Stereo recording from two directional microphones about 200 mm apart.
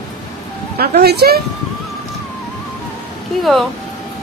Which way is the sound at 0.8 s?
50° right (ahead or behind).